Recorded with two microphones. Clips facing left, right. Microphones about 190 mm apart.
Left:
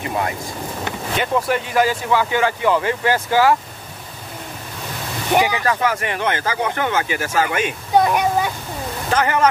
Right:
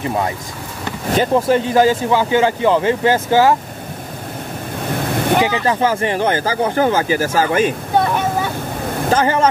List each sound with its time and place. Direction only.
1.1 s speech: 35° right (ahead or behind)
5.7 s speech: 30° right (ahead or behind)
8.0 s speech: 15° left (ahead or behind)
9.1 s speech: 30° right (ahead or behind)